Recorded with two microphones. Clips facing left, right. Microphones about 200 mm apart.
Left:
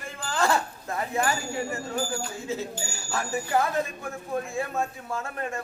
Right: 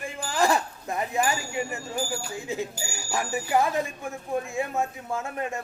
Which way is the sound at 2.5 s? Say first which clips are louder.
Right 1 dB; 15° right (ahead or behind).